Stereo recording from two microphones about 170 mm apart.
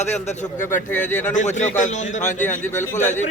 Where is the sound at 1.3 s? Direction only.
45° left (ahead or behind).